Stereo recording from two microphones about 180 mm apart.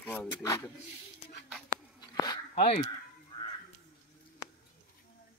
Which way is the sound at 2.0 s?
20° left (ahead or behind).